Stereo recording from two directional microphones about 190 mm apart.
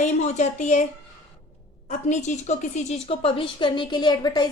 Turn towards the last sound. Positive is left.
turn(degrees=20)  # may be behind; listen again after turning